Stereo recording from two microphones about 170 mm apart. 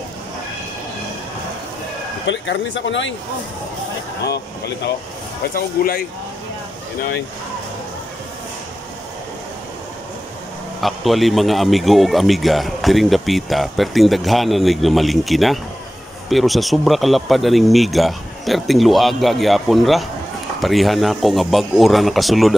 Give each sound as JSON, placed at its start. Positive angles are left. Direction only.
{"t": 2.2, "sound": "speech", "side_deg": 90}
{"t": 5.5, "sound": "speech", "side_deg": 60}
{"t": 10.8, "sound": "a man's voice", "side_deg": 0}